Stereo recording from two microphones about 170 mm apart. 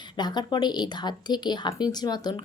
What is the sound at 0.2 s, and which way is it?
Speech, 25° left (ahead or behind).